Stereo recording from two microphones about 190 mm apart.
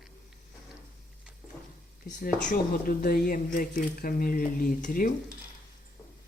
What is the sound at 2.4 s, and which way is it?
Speech, 45° left (ahead or behind).